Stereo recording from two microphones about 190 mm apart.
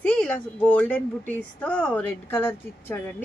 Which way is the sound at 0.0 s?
5° left (ahead or behind).